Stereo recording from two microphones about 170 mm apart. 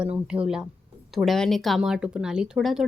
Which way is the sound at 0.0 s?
5° right (ahead or behind).